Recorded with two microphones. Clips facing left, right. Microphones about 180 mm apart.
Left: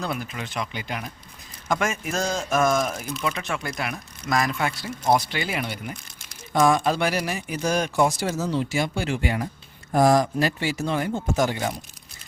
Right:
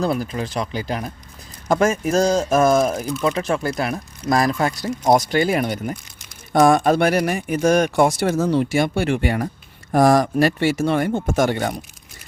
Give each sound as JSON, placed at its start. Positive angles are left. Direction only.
{"t": 0.0, "sound": "speech", "side_deg": -35}